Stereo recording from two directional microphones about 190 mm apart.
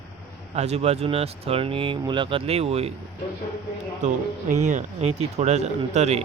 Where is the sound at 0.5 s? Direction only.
35° right (ahead or behind).